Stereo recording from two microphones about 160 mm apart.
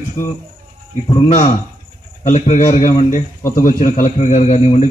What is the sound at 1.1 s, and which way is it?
A man's voice, 50° left (ahead or behind).